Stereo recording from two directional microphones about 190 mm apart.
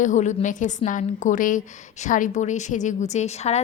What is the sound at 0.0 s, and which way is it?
A woman's voice, 40° left (ahead or behind).